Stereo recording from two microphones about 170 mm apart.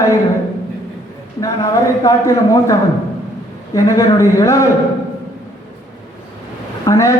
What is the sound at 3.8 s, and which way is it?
Speech, 20° left (ahead or behind).